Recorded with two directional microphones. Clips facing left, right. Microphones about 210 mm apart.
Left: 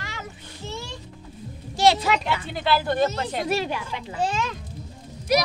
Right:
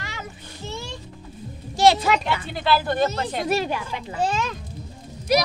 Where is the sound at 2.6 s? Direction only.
15° left (ahead or behind).